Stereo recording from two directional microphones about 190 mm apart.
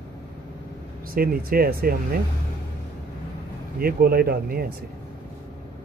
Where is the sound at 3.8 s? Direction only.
50° right (ahead or behind).